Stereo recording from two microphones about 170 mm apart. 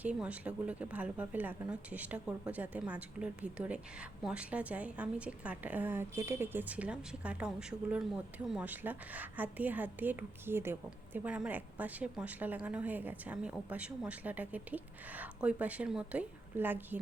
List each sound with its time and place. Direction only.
0.0 s a woman's voice: 10° right (ahead or behind)